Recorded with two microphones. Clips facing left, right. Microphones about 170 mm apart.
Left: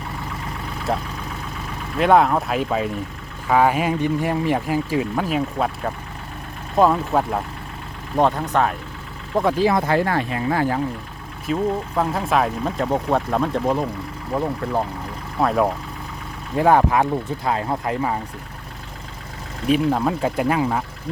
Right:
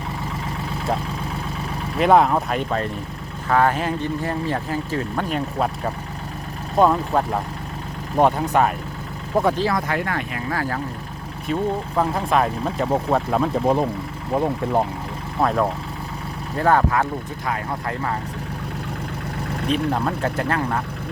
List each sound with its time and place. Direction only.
2.0 s speech: centre (ahead or behind)
9.7 s speech: 30° left (ahead or behind)
11.4 s speech: centre (ahead or behind)
14.3 s speech: 20° right (ahead or behind)
15.4 s speech: centre (ahead or behind)
16.6 s speech: 15° left (ahead or behind)
17.4 s speech: 25° left (ahead or behind)
19.6 s speech: 5° left (ahead or behind)